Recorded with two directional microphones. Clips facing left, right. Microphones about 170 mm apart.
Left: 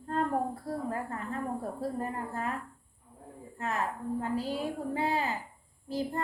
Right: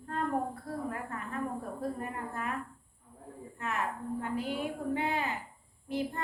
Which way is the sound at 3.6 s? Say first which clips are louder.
Left 2 dB; 35° left (ahead or behind).